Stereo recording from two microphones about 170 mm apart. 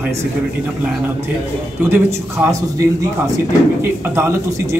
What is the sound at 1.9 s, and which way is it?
Speech, 15° right (ahead or behind).